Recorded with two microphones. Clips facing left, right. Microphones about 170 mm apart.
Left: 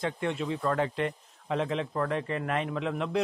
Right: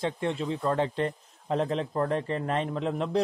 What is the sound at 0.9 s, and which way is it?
A man's voice, 35° right (ahead or behind).